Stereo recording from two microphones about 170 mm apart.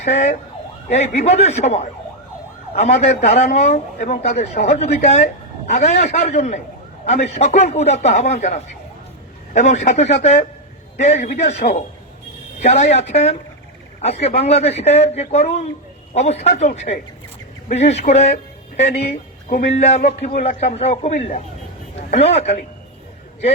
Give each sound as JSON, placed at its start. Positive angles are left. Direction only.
{"t": 0.0, "sound": "ambulance", "side_deg": 40}
{"t": 0.9, "sound": "a man's voice", "side_deg": 40}
{"t": 12.5, "sound": "a man's voice", "side_deg": 40}